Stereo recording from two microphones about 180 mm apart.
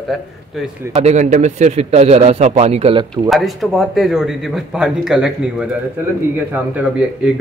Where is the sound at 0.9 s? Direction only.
40° right (ahead or behind).